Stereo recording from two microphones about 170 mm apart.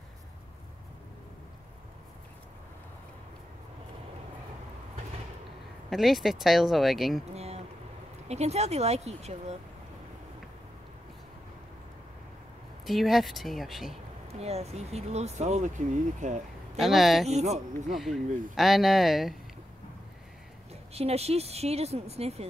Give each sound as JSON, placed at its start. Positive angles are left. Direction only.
{"t": 5.9, "sound": "speech", "side_deg": 0}
{"t": 7.3, "sound": "a sound", "side_deg": -40}
{"t": 8.3, "sound": "speech", "side_deg": -40}
{"t": 12.8, "sound": "speech", "side_deg": 0}
{"t": 14.2, "sound": "speech", "side_deg": -40}
{"t": 16.7, "sound": "speech", "side_deg": 0}
{"t": 17.3, "sound": "speech", "side_deg": -40}
{"t": 17.9, "sound": "speech", "side_deg": 0}
{"t": 20.9, "sound": "speech", "side_deg": -35}